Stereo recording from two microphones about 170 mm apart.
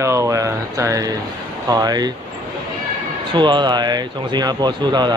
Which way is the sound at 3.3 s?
25° right (ahead or behind).